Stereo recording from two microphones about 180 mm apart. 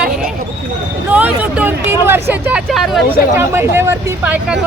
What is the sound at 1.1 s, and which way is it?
Vehicle, 10° right (ahead or behind).